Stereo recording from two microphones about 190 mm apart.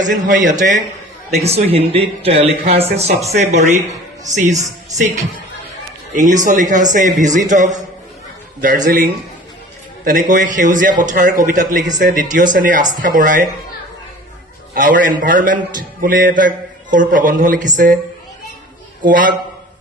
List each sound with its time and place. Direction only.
0.0 s speech: 40° right (ahead or behind)
6.1 s speech: 40° right (ahead or behind)
14.8 s speech: 45° right (ahead or behind)
19.0 s speech: 45° right (ahead or behind)